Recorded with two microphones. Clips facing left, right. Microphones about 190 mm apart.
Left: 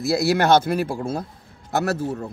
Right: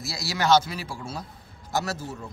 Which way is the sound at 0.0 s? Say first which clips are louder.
Left 10 dB; 55° left (ahead or behind).